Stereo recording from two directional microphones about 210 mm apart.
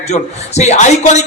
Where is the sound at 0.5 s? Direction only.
35° left (ahead or behind).